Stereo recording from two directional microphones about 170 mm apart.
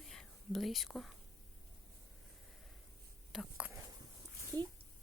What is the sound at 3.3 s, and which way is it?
Speech, 5° right (ahead or behind).